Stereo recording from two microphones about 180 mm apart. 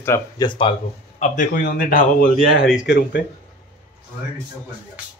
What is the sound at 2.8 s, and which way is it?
Speech, 80° left.